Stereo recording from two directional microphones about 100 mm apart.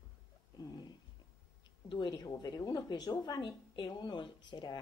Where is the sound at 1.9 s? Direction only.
45° left (ahead or behind).